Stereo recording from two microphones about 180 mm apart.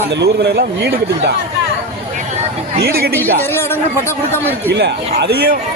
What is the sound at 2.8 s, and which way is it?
Speech, 60° right (ahead or behind).